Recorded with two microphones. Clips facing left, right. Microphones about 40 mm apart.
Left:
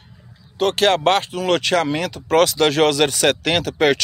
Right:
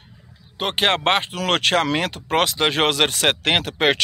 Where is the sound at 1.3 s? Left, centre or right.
Right.